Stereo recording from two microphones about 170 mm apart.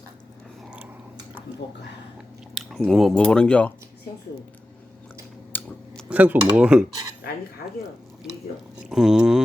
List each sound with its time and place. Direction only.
2.6 s speech: centre (ahead or behind)
5.5 s scissors: 10° left (ahead or behind)
6.1 s speech: 10° right (ahead or behind)
8.9 s speech: 5° right (ahead or behind)